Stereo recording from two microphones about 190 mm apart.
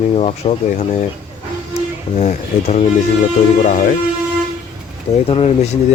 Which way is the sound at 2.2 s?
35° left (ahead or behind).